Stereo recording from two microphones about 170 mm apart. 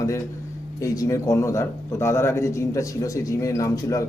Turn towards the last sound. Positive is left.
turn(degrees=20)  # may be behind; listen again after turning